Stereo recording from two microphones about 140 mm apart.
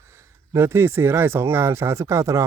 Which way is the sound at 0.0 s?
20° right (ahead or behind).